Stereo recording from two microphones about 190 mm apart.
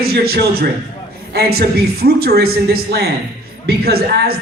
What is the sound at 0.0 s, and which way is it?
Speech, 55° right (ahead or behind).